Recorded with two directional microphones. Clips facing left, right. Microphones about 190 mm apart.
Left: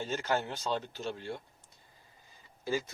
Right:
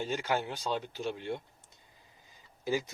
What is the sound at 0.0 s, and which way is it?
Speech, 10° right (ahead or behind).